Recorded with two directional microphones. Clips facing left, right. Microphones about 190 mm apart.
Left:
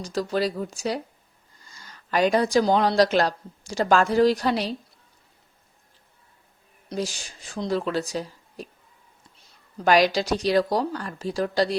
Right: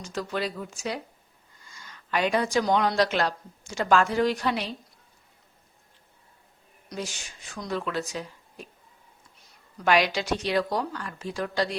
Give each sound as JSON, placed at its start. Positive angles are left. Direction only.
{"t": 0.0, "sound": "a woman's voice", "side_deg": 35}
{"t": 6.8, "sound": "speech", "side_deg": 35}
{"t": 9.7, "sound": "speech", "side_deg": 40}